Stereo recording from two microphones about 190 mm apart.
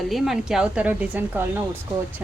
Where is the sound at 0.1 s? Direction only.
Centre (ahead or behind).